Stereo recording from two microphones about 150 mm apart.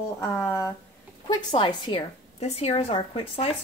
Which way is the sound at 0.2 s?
15° left (ahead or behind).